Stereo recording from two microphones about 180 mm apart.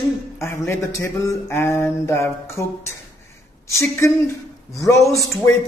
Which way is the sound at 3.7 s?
15° left (ahead or behind).